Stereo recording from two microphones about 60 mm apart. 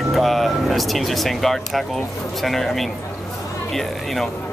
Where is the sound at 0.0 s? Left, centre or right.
Centre.